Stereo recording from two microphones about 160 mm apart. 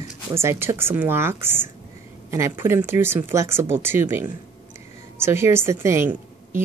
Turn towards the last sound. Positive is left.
turn(degrees=-15)  # may be behind; listen again after turning